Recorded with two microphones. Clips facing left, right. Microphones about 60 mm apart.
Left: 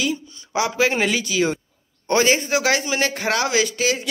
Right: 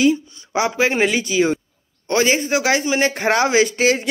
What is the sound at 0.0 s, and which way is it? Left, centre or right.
Speech, right.